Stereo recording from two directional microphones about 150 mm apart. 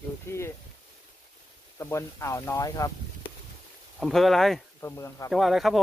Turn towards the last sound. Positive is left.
turn(degrees=0)  # may be behind; listen again after turning